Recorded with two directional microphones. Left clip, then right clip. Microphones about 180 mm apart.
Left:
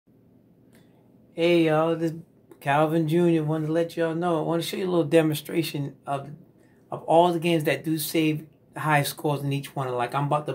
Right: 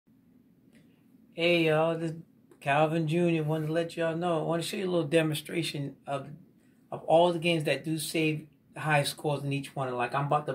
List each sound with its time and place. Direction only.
1.3 s speech: 40° left (ahead or behind)